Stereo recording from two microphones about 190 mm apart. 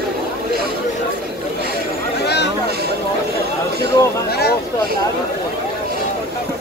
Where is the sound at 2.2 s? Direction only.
65° left (ahead or behind).